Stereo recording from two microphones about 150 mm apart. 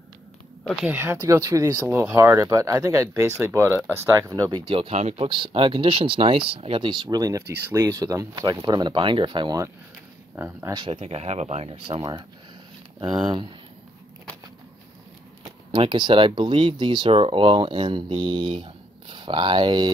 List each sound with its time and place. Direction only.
0.7 s speech: 5° right (ahead or behind); by 9.6 s 30° right (ahead or behind)
10.3 s speech: 15° right (ahead or behind)
10.8 s speech: 45° right (ahead or behind)
12.0 s speech: 25° right (ahead or behind)
15.4 s speech: 35° right (ahead or behind)